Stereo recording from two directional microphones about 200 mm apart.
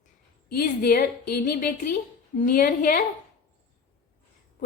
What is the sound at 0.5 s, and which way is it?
A woman's voice, 50° left (ahead or behind).